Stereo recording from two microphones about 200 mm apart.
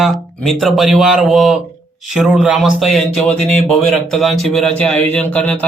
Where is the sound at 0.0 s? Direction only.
Centre (ahead or behind).